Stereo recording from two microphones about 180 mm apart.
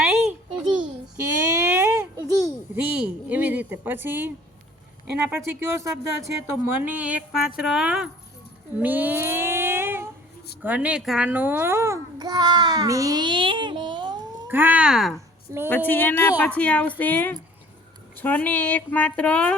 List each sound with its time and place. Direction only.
0.8 s a sound: 15° right (ahead or behind)
2.7 s speech: 10° right (ahead or behind)
8.8 s a sound: 10° right (ahead or behind)
10.6 s a child's voice: 10° right (ahead or behind); by 14.2 s 25° right (ahead or behind)
14.4 s speech: 10° right (ahead or behind)
15.5 s speech: 15° right (ahead or behind)
15.9 s speech: 10° left (ahead or behind)